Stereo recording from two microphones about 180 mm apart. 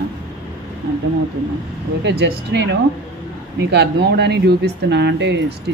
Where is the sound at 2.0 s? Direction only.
70° right (ahead or behind).